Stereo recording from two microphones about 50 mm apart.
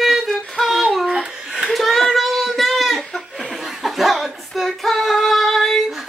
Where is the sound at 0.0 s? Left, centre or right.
Centre.